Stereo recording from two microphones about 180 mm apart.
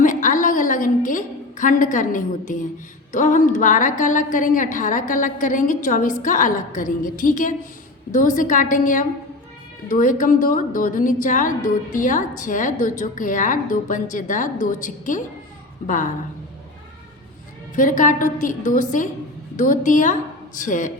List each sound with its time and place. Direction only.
0.0 s a sound: 45° left (ahead or behind)
3.1 s a woman's voice: 45° left (ahead or behind)
17.7 s a woman's voice: 45° left (ahead or behind)